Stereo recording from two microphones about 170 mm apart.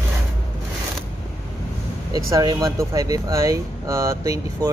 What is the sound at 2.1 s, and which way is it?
Speech, 25° right (ahead or behind).